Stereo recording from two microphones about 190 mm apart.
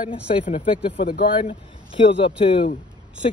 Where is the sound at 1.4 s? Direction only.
30° left (ahead or behind).